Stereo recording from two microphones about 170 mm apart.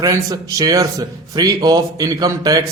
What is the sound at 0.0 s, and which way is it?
Speech, 20° right (ahead or behind).